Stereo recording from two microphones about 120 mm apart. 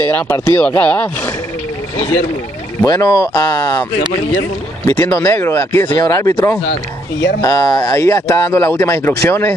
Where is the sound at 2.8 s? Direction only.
25° left (ahead or behind).